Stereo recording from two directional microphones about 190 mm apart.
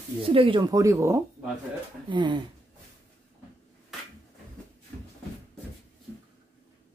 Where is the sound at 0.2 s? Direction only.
30° right (ahead or behind).